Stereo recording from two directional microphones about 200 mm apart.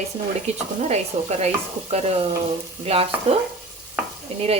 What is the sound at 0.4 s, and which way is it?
Stir, 35° right (ahead or behind).